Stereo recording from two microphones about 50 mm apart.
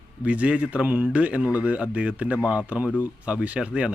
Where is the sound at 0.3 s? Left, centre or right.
Right.